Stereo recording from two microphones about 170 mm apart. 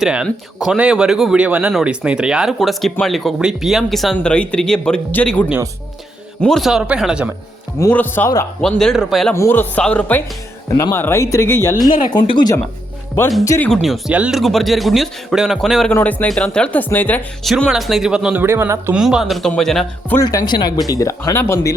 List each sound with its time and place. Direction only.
0.0 s speech: 5° right (ahead or behind)
7.8 s speech: 10° left (ahead or behind)
9.3 s speech: 15° left (ahead or behind)
13.7 s speech: centre (ahead or behind)
17.5 s speech: centre (ahead or behind)
18.9 s speech: 5° right (ahead or behind)
20.1 s speech: 20° left (ahead or behind)